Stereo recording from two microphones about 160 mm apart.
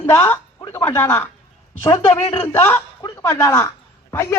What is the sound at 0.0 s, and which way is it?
Speech, 15° left (ahead or behind).